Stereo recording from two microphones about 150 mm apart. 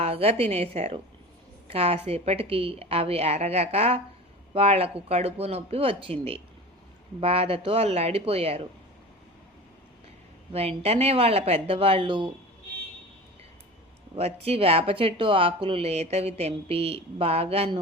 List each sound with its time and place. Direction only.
0.0 s a woman's voice: 40° right (ahead or behind)
10.5 s speech: 45° right (ahead or behind)
14.2 s speech: 45° right (ahead or behind)